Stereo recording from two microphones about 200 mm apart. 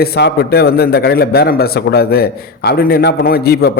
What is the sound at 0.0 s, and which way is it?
A man's voice, 55° left (ahead or behind).